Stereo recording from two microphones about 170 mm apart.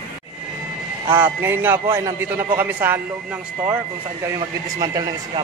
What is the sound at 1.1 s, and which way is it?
A man's voice, 15° right (ahead or behind).